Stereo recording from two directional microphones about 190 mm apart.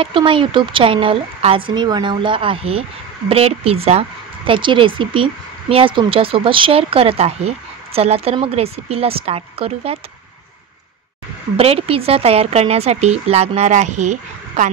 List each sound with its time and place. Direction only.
0.0 s speech: 25° right (ahead or behind)
11.5 s speech: 30° right (ahead or behind)